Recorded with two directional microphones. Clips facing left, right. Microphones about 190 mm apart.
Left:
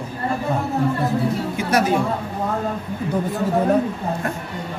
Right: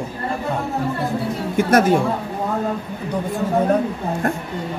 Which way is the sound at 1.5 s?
50° right (ahead or behind).